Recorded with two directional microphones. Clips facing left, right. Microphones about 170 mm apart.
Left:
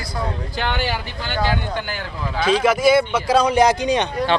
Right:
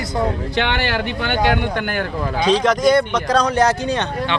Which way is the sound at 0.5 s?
70° right (ahead or behind).